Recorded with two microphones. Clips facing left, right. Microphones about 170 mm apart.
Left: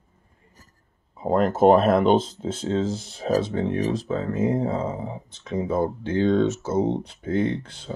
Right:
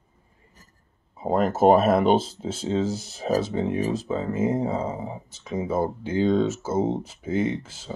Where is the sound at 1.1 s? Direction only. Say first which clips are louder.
Left 2 dB; 5° right (ahead or behind).